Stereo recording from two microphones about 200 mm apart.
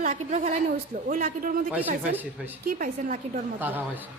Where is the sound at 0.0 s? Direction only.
40° right (ahead or behind).